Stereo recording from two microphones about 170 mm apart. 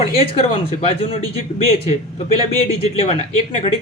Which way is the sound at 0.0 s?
35° left (ahead or behind).